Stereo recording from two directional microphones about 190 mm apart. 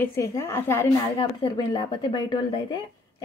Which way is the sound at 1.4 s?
25° left (ahead or behind).